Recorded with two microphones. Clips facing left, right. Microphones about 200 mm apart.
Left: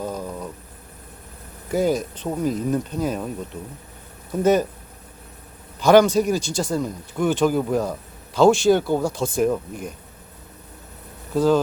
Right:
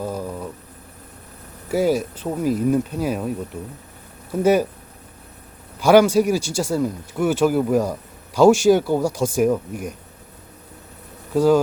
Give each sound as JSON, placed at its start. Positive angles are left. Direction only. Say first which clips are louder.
{"t": 0.0, "sound": "a sound", "louder": "right 2 dB", "side_deg": -10}
{"t": 1.7, "sound": "speech", "louder": "right 2 dB", "side_deg": -10}
{"t": 5.8, "sound": "speech", "louder": "right 1 dB", "side_deg": -10}
{"t": 11.3, "sound": "speech", "louder": "right 2 dB", "side_deg": -10}